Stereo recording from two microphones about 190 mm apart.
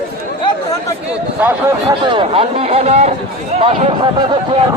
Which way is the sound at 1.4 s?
10° right (ahead or behind).